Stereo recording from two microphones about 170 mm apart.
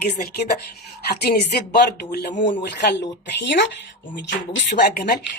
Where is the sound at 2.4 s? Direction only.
90° left.